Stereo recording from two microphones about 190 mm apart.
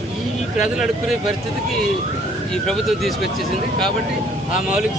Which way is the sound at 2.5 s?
Centre (ahead or behind).